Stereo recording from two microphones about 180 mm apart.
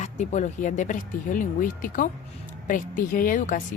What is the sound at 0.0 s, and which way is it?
A woman's voice, 40° left (ahead or behind).